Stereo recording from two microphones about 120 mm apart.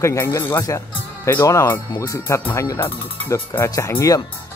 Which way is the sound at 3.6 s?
25° left (ahead or behind).